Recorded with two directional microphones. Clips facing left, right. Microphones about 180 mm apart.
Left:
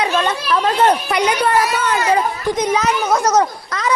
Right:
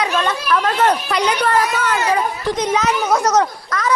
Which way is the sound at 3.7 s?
20° left (ahead or behind).